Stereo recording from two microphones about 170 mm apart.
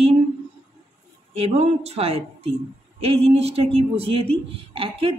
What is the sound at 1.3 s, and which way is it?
Speech, 40° right (ahead or behind).